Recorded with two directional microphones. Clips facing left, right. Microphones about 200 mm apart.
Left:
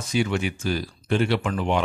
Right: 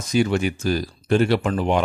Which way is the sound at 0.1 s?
40° right (ahead or behind).